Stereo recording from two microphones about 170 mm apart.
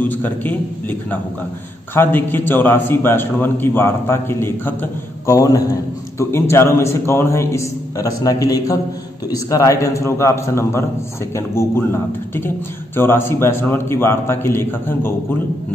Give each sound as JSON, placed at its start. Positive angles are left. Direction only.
{"t": 0.0, "sound": "speech", "side_deg": 10}
{"t": 2.0, "sound": "speech", "side_deg": 10}